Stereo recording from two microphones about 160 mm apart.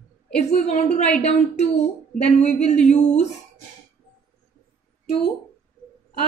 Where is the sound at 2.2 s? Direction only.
45° left (ahead or behind).